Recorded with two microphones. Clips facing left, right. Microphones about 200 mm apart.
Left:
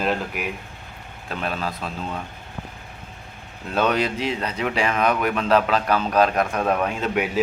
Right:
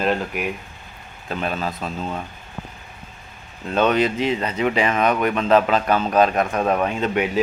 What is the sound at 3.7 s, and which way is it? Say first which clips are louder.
Speech: right 3 dB; centre (ahead or behind).